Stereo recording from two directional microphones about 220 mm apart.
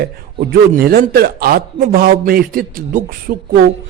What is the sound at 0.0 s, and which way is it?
A man's voice, 45° right (ahead or behind).